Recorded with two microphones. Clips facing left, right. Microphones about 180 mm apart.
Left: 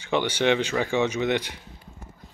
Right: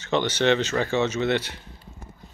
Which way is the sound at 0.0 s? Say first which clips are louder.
Right 1 dB; 10° left (ahead or behind).